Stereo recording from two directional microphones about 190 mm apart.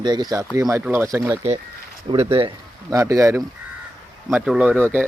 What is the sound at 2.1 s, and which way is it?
Speech, 30° right (ahead or behind).